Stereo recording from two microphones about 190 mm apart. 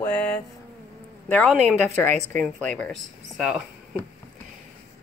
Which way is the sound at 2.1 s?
40° right (ahead or behind).